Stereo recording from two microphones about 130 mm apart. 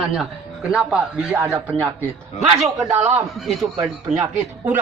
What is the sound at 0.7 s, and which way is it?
Speech, 5° right (ahead or behind).